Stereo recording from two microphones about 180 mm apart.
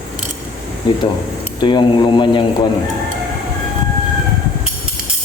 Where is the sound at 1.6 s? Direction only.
25° left (ahead or behind).